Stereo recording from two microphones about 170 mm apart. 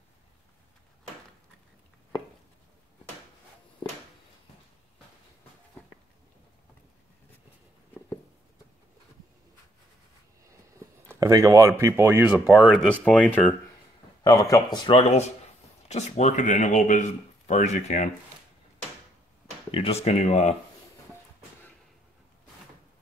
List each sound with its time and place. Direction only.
11.1 s speech: 20° right (ahead or behind); by 13.6 s 10° left (ahead or behind)
14.2 s speech: 20° left (ahead or behind); by 18.1 s 45° left (ahead or behind)
19.7 s speech: 35° left (ahead or behind)